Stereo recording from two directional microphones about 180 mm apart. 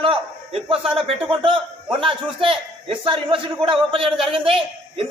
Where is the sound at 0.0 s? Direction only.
30° right (ahead or behind).